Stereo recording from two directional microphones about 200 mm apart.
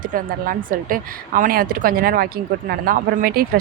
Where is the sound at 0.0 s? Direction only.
45° right (ahead or behind).